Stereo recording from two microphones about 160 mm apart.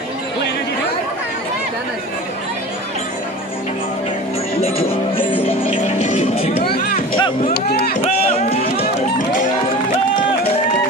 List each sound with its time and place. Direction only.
4.6 s music: 40° left (ahead or behind)
6.6 s a sound: 75° left (ahead or behind)
7.0 s music: 35° left (ahead or behind)
7.5 s speech: 90° left
7.9 s music: 40° left (ahead or behind)